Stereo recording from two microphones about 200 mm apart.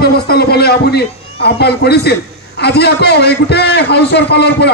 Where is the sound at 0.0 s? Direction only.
50° left (ahead or behind).